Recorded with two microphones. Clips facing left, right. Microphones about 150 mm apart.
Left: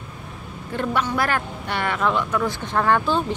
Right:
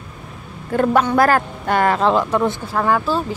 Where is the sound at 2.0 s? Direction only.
30° right (ahead or behind).